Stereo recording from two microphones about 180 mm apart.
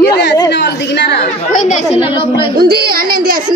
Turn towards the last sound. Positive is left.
turn(degrees=-55)  # may be behind; listen again after turning